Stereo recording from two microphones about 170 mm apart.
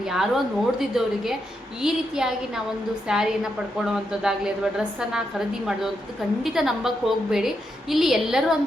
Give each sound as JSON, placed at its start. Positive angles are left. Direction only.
{"t": 0.0, "sound": "a woman's voice", "side_deg": 0}
{"t": 6.4, "sound": "a woman's voice", "side_deg": 0}